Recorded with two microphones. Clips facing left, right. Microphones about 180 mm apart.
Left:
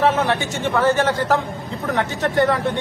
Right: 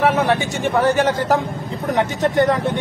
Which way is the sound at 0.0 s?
15° right (ahead or behind).